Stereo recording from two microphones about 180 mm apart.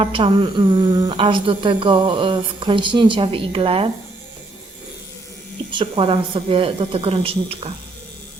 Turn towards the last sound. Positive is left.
turn(degrees=-30)  # may be behind; listen again after turning